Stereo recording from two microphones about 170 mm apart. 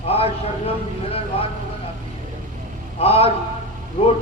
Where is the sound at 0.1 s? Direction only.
35° left (ahead or behind).